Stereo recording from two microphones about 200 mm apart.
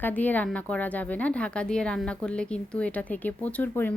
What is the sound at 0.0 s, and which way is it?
A woman's voice, 10° left (ahead or behind).